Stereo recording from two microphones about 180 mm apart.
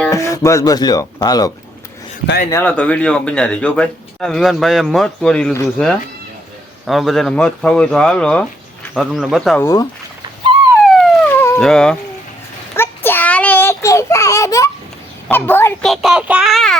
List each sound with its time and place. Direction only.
0.1 s speech: 15° left (ahead or behind)
2.5 s speech: 10° left (ahead or behind)
9.6 s a woman's voice: 15° left (ahead or behind)
10.9 s police car: 5° left (ahead or behind)
11.6 s speech: 5° left (ahead or behind)
12.7 s child singing: 10° left (ahead or behind)
15.3 s a woman's voice: 10° left (ahead or behind)
15.9 s speech: centre (ahead or behind)